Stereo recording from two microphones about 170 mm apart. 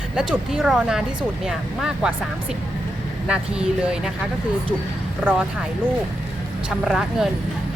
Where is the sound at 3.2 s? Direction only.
5° right (ahead or behind).